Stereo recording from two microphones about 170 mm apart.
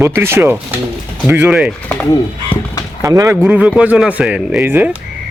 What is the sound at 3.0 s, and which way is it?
Speech, 20° right (ahead or behind).